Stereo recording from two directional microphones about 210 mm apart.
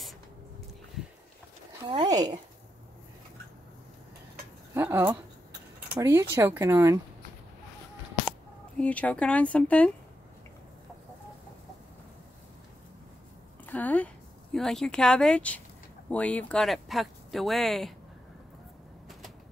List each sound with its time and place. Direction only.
1.9 s speech: 20° right (ahead or behind)
4.7 s speech: 10° right (ahead or behind)
8.7 s speech: 5° left (ahead or behind)
13.7 s a sound: 5° left (ahead or behind)
16.1 s speech: 5° left (ahead or behind)